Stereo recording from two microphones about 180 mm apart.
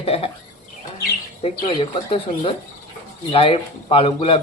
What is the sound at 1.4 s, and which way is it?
Speech, 35° left (ahead or behind).